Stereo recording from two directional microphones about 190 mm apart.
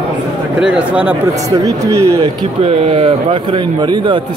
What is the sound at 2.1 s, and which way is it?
Speech, 30° right (ahead or behind).